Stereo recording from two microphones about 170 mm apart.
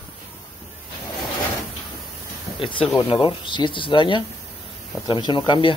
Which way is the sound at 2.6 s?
30° left (ahead or behind).